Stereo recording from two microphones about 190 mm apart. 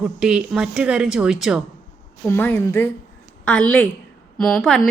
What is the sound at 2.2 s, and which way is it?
A woman's voice, 10° left (ahead or behind).